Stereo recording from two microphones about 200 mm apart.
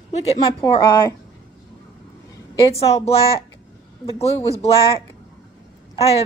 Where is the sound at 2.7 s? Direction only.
30° left (ahead or behind).